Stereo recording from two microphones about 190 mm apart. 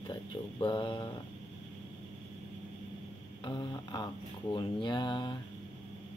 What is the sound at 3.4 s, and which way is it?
Speech, 25° left (ahead or behind).